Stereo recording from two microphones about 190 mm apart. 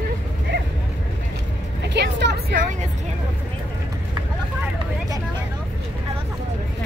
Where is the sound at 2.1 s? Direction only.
65° right (ahead or behind).